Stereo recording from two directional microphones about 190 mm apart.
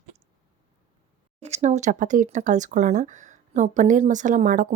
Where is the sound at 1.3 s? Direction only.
35° right (ahead or behind).